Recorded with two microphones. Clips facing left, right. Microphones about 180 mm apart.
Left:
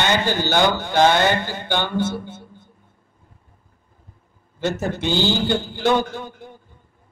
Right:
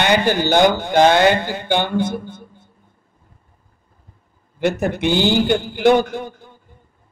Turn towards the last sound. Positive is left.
turn(degrees=-15)  # may be behind; listen again after turning